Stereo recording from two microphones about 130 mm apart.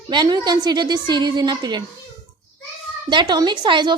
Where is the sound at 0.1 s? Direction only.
35° right (ahead or behind).